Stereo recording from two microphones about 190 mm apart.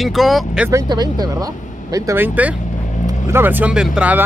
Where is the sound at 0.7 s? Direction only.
20° right (ahead or behind).